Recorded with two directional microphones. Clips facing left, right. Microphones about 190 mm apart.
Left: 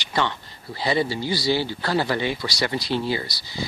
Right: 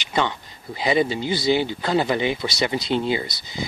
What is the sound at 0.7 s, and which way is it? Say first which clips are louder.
Speech: right 3 dB; 15° right (ahead or behind).